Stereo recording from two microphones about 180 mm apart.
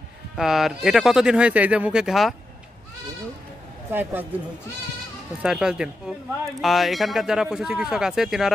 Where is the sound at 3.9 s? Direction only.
10° right (ahead or behind).